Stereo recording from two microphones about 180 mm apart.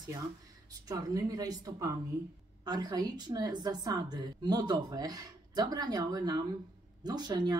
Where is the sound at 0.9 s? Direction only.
20° right (ahead or behind).